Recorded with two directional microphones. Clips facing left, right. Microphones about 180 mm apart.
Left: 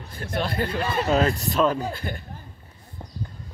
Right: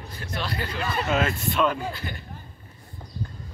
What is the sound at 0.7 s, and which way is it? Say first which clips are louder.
Speech: left 1 dB; 35° left (ahead or behind).